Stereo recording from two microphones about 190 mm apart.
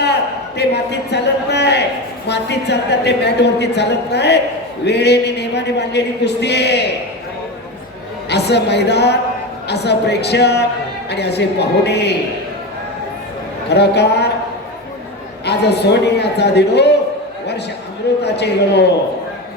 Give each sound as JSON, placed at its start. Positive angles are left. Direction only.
{"t": 0.0, "sound": "a sound", "side_deg": 60}
{"t": 2.2, "sound": "a woman's voice", "side_deg": 60}
{"t": 8.3, "sound": "a woman's voice", "side_deg": 60}
{"t": 13.7, "sound": "a woman's voice", "side_deg": 60}
{"t": 15.4, "sound": "a woman's voice", "side_deg": 60}
{"t": 18.2, "sound": "a woman's voice", "side_deg": 60}